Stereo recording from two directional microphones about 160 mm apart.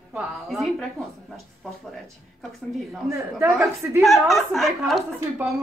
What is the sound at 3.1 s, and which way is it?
Speech, 15° right (ahead or behind).